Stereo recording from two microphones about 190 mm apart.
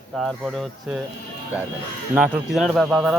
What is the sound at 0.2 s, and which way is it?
Speech, centre (ahead or behind).